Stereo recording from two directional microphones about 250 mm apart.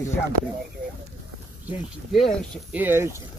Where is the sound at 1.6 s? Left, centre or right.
Centre.